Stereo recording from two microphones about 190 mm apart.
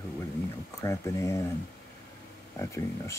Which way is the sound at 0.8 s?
15° left (ahead or behind).